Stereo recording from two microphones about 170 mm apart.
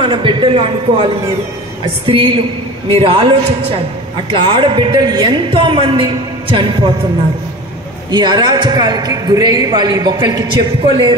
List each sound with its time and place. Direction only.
0.0 s a man's voice: 30° right (ahead or behind)
2.0 s a man's voice: 30° right (ahead or behind)
8.1 s a man's voice: 25° right (ahead or behind)